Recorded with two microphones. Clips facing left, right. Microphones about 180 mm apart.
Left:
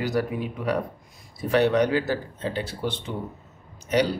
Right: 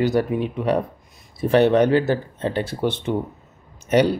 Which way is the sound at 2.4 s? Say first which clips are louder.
Right 6 dB; 55° right (ahead or behind).